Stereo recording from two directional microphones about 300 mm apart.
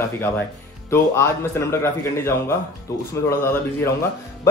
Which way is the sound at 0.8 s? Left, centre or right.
Centre.